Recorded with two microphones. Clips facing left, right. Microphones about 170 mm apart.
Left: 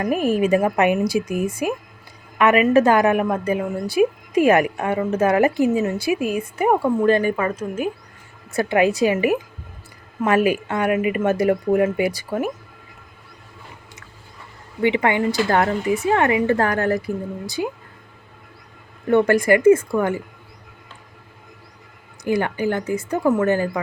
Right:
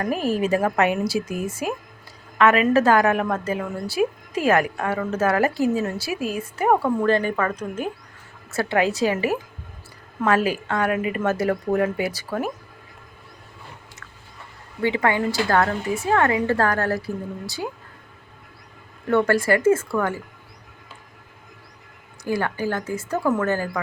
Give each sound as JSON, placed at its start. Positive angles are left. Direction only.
{"t": 0.3, "sound": "a woman's voice", "side_deg": 15}
{"t": 14.8, "sound": "a woman's voice", "side_deg": 20}
{"t": 19.1, "sound": "a woman's voice", "side_deg": 15}
{"t": 22.2, "sound": "a woman's voice", "side_deg": 20}